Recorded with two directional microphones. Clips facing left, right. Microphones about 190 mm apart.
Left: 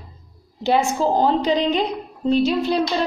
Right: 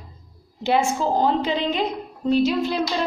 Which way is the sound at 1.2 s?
35° left (ahead or behind).